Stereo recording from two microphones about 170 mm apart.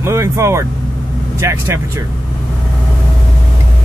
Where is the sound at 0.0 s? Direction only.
15° right (ahead or behind).